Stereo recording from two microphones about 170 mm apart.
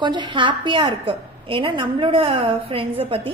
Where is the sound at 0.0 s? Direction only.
25° right (ahead or behind).